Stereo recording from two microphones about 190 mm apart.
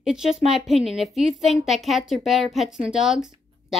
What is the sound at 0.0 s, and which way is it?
A woman's voice, 5° right (ahead or behind).